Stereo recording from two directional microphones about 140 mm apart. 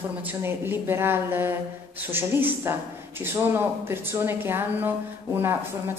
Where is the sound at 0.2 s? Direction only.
15° right (ahead or behind).